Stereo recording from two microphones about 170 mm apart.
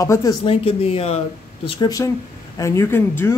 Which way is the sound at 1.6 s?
25° left (ahead or behind).